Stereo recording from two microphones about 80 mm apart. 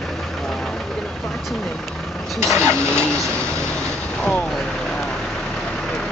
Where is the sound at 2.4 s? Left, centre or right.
Right.